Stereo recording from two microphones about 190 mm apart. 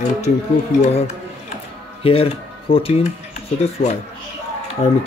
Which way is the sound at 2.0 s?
30° left (ahead or behind).